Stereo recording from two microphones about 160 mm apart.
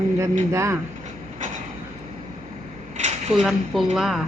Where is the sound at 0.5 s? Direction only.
20° right (ahead or behind).